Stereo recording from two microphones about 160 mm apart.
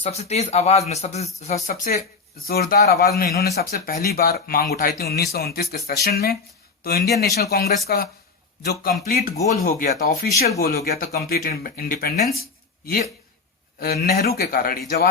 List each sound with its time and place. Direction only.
0.0 s speech: 40° left (ahead or behind)
1.7 s a man's voice: 70° left (ahead or behind)
3.6 s a man's voice: 65° left (ahead or behind); by 7.7 s 85° left
7.9 s speech: 75° left (ahead or behind)
12.3 s a sound: 70° left (ahead or behind)
13.7 s speech: 75° left (ahead or behind)